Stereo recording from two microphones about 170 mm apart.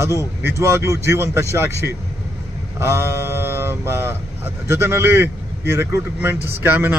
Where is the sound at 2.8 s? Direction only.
15° right (ahead or behind).